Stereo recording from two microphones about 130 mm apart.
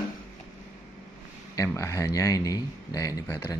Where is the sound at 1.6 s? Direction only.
25° left (ahead or behind).